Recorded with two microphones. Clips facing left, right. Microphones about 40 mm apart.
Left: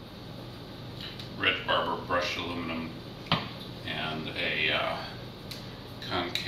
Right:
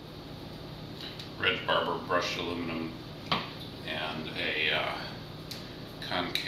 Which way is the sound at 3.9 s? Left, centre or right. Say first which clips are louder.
Left 1 dB; centre.